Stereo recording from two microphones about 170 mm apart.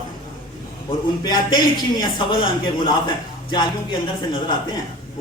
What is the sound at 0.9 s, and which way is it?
A man's voice, 25° left (ahead or behind).